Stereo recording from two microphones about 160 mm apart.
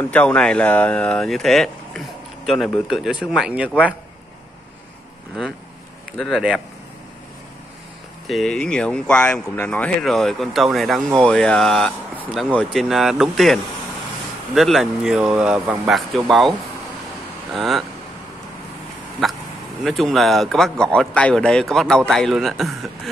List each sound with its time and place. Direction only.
0.0 s speech: 10° left (ahead or behind)
6.1 s speech: centre (ahead or behind)
8.3 s speech: centre (ahead or behind)
15.9 s speech: centre (ahead or behind)
19.2 s a sound: centre (ahead or behind)
19.8 s speech: centre (ahead or behind)